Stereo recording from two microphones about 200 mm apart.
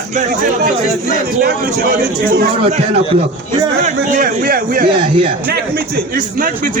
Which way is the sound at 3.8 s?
40° right (ahead or behind).